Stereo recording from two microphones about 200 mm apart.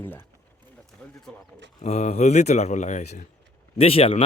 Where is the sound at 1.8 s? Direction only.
35° left (ahead or behind).